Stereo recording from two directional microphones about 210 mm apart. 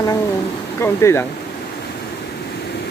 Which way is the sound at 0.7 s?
10° left (ahead or behind).